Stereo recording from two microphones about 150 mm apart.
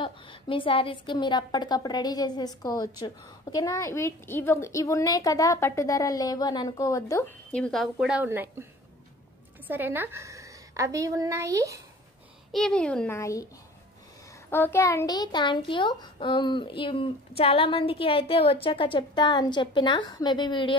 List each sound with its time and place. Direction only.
0.0 s a woman's voice: 35° left (ahead or behind)
7.5 s a woman's voice: 5° left (ahead or behind)
8.3 s a woman's voice: 15° right (ahead or behind)
9.7 s a woman's voice: 15° right (ahead or behind)
12.5 s a woman's voice: 5° left (ahead or behind)
13.2 s a woman's voice: 20° left (ahead or behind)
14.5 s a child's voice: 15° left (ahead or behind); by 20.7 s 30° left (ahead or behind)